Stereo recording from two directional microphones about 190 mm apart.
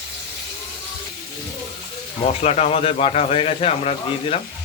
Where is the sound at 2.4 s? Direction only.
35° left (ahead or behind).